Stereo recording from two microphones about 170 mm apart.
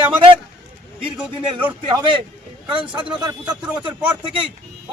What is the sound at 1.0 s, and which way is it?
Speech, 30° right (ahead or behind).